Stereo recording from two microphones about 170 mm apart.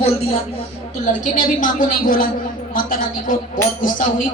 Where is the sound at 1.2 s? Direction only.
50° left (ahead or behind).